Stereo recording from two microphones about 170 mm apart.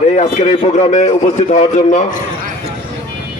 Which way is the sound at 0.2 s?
40° left (ahead or behind).